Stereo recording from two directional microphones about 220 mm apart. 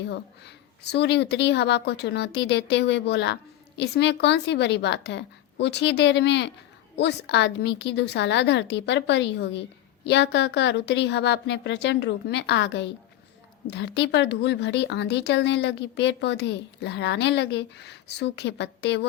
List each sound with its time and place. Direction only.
0.0 s a woman's voice: 50° left (ahead or behind)